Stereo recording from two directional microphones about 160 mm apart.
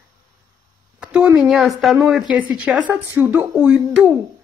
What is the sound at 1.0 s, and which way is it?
Speech, 5° right (ahead or behind).